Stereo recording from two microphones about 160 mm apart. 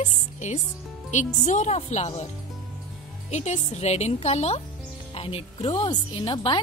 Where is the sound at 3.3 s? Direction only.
45° left (ahead or behind).